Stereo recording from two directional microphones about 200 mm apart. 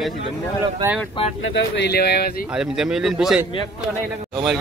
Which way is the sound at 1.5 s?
55° left (ahead or behind).